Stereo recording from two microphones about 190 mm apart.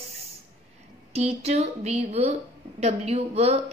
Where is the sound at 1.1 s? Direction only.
35° right (ahead or behind).